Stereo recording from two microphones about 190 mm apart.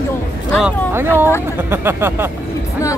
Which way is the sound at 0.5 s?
Centre (ahead or behind).